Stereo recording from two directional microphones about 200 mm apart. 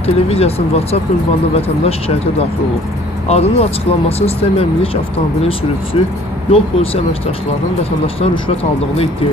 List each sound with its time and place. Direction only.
0.0 s speech: 30° left (ahead or behind)
3.3 s speech: 30° left (ahead or behind)
5.9 s speech: 25° left (ahead or behind)